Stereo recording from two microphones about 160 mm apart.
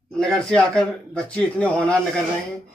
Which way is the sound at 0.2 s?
5° left (ahead or behind).